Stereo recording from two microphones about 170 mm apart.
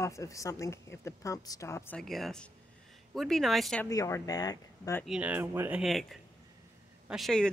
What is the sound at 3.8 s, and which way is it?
Speech, 20° left (ahead or behind).